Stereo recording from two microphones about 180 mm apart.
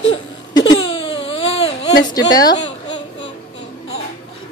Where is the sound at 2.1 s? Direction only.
20° left (ahead or behind).